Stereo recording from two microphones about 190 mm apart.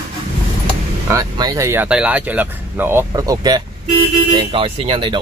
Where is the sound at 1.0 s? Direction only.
20° right (ahead or behind).